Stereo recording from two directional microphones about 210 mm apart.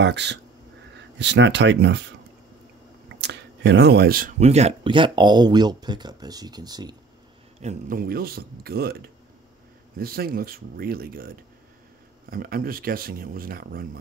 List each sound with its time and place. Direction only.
0.0 s speech: 55° right (ahead or behind)
3.2 s speech: 55° right (ahead or behind); by 7.0 s 20° right (ahead or behind)
7.6 s speech: 40° right (ahead or behind)
9.9 s speech: 45° right (ahead or behind)